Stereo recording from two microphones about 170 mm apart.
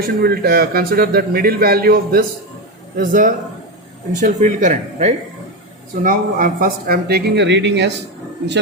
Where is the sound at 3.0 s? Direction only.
50° right (ahead or behind).